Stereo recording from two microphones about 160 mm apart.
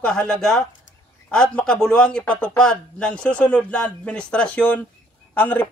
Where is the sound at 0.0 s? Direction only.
5° left (ahead or behind).